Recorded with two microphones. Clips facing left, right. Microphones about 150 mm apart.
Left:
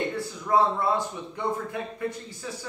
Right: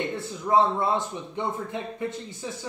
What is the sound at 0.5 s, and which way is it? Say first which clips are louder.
Speech: right 1 dB; 20° right (ahead or behind).